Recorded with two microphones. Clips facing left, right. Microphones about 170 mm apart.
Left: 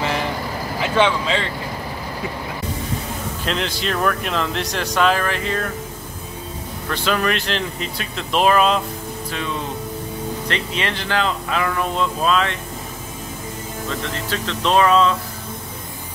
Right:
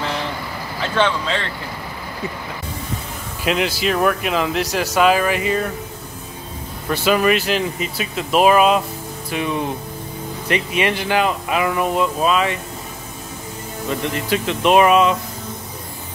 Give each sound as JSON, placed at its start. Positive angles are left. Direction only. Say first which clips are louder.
{"t": 0.8, "sound": "speech", "louder": "left 1 dB", "side_deg": 10}
{"t": 3.4, "sound": "speech", "louder": "right 5 dB", "side_deg": -5}
{"t": 6.9, "sound": "speech", "louder": "right 5 dB", "side_deg": -10}
{"t": 13.8, "sound": "speech", "louder": "right 5 dB", "side_deg": -15}